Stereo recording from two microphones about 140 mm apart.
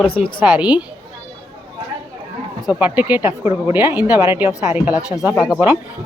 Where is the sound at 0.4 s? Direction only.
10° right (ahead or behind).